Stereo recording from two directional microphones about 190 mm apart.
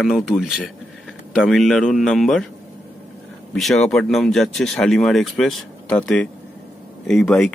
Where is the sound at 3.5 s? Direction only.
Centre (ahead or behind).